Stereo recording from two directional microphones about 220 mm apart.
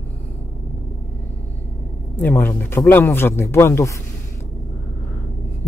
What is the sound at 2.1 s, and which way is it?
A man's voice, 10° left (ahead or behind).